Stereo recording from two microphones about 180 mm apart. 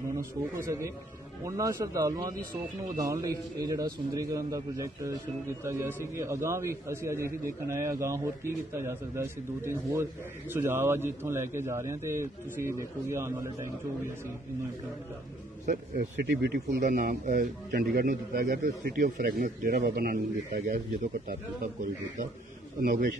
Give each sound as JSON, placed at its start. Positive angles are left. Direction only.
{"t": 0.7, "sound": "a man's voice", "side_deg": -15}
{"t": 15.6, "sound": "a man's voice", "side_deg": -45}
{"t": 16.3, "sound": "speech", "side_deg": -65}
{"t": 16.8, "sound": "a man's voice", "side_deg": -50}
{"t": 22.8, "sound": "a man's voice", "side_deg": -55}